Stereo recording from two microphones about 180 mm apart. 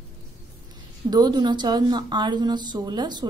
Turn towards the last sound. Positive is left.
turn(degrees=-25)  # may be behind; listen again after turning